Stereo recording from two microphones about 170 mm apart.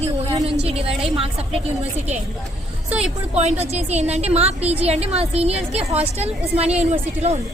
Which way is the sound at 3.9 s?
40° right (ahead or behind).